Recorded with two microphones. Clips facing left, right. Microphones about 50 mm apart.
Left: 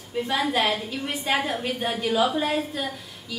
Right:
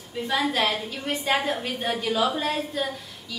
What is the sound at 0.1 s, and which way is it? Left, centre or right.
A woman's voice, centre.